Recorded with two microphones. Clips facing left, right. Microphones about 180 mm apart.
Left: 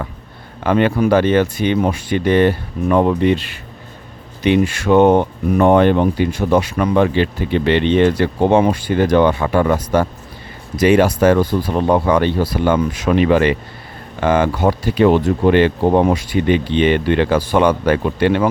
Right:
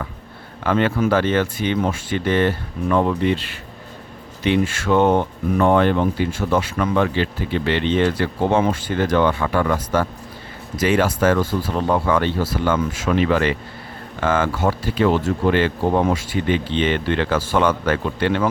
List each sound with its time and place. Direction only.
0.6 s speech: 15° left (ahead or behind)